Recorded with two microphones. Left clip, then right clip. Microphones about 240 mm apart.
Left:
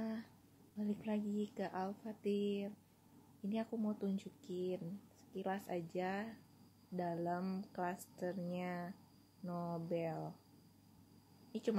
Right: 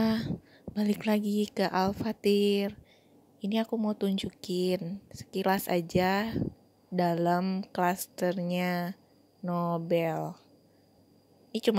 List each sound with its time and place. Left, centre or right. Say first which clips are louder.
0.0 s a sound: right 16 dB; right
0.7 s speech: right 13 dB; right
11.5 s a woman's voice: right 13 dB; right